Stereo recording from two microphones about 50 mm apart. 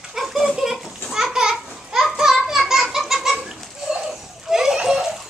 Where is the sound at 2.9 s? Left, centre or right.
Centre.